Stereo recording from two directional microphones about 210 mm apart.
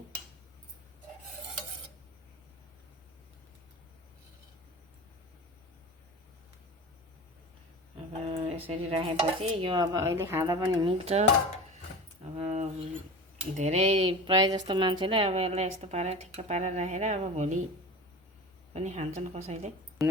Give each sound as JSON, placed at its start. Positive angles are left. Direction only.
{"t": 7.9, "sound": "a woman's voice", "side_deg": -30}
{"t": 12.2, "sound": "a sound", "side_deg": -35}
{"t": 13.6, "sound": "a woman's voice", "side_deg": -30}
{"t": 18.7, "sound": "a woman's voice", "side_deg": -30}